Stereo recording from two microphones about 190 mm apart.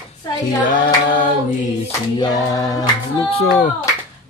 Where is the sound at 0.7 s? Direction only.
45° left (ahead or behind).